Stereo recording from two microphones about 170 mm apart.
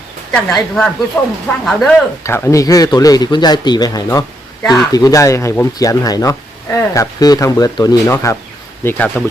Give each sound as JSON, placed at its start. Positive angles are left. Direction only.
{"t": 0.3, "sound": "a woman's voice", "side_deg": 5}
{"t": 2.2, "sound": "speech", "side_deg": 15}
{"t": 4.6, "sound": "a woman's voice", "side_deg": 0}
{"t": 4.9, "sound": "speech", "side_deg": 20}